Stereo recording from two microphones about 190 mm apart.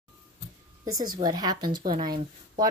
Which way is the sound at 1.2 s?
20° right (ahead or behind).